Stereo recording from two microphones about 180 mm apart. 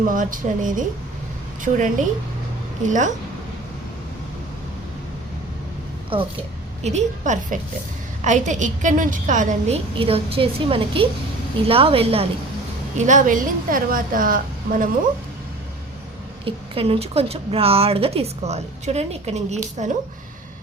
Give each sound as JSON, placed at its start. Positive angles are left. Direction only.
{"t": 0.0, "sound": "a woman's voice", "side_deg": -50}
{"t": 2.8, "sound": "a woman's voice", "side_deg": -45}
{"t": 6.1, "sound": "a woman's voice", "side_deg": -30}
{"t": 6.8, "sound": "a woman's voice", "side_deg": -40}
{"t": 13.0, "sound": "a woman's voice", "side_deg": -45}
{"t": 16.4, "sound": "a woman's voice", "side_deg": -30}